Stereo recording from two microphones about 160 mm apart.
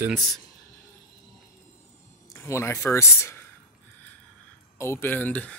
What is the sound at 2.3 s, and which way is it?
Speech, 15° left (ahead or behind).